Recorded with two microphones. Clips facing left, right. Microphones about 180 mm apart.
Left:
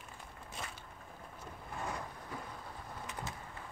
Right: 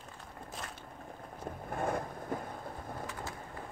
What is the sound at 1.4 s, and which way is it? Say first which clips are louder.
Vehicle: right 8 dB; 50° right (ahead or behind).